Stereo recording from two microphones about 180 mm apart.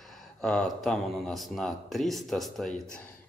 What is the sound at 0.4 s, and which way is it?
Speech, 5° left (ahead or behind).